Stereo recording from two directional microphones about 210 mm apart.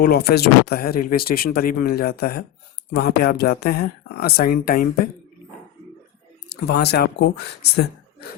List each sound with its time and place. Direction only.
0.0 s speech: 50° left (ahead or behind)
6.5 s speech: 50° left (ahead or behind)